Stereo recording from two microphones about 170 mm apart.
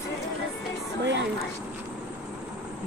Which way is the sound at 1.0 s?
90° right.